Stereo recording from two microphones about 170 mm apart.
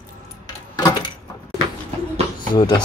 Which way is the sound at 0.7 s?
20° left (ahead or behind).